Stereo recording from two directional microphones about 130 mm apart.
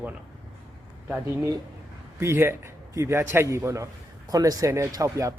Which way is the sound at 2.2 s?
20° right (ahead or behind).